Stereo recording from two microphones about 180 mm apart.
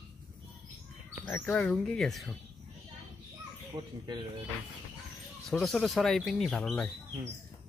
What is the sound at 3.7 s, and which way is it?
Speech, 25° right (ahead or behind).